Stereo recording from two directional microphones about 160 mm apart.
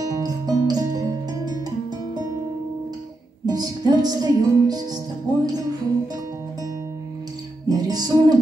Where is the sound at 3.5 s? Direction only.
25° right (ahead or behind).